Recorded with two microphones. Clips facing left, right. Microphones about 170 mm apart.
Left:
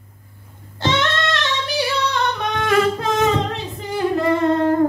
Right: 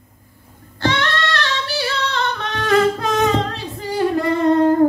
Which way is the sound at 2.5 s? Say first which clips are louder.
Right 3 dB; 15° left (ahead or behind).